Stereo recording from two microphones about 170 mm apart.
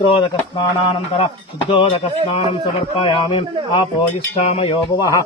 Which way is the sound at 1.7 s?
30° left (ahead or behind).